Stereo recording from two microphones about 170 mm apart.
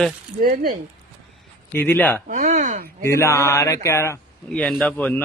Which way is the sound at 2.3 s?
45° right (ahead or behind).